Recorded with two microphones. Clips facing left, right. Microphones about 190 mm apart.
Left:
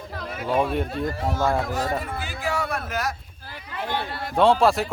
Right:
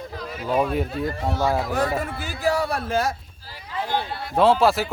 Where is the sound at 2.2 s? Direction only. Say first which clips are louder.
Right 4 dB; 40° right (ahead or behind).